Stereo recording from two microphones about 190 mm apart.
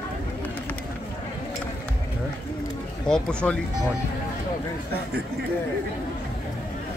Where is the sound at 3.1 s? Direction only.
5° left (ahead or behind).